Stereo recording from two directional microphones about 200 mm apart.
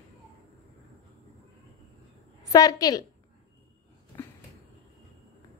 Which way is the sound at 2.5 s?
20° left (ahead or behind).